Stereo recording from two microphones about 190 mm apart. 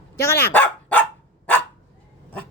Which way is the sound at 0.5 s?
10° left (ahead or behind).